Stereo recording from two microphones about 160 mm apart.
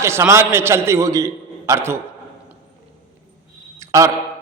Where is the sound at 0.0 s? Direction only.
15° right (ahead or behind).